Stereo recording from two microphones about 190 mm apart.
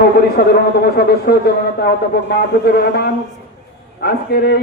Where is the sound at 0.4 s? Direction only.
55° left (ahead or behind).